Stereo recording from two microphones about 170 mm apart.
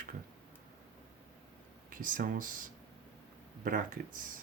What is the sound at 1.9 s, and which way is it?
Speech, 50° right (ahead or behind).